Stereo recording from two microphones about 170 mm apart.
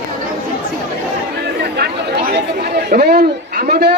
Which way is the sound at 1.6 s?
70° right (ahead or behind).